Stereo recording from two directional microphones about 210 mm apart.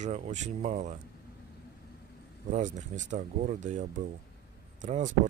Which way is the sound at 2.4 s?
35° right (ahead or behind).